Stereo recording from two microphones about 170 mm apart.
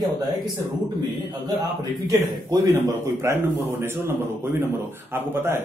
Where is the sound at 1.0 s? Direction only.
20° right (ahead or behind).